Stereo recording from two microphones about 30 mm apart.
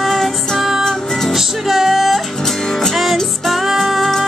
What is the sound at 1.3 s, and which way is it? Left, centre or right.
Music, centre.